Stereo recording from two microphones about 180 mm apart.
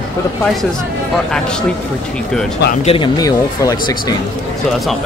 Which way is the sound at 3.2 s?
20° left (ahead or behind).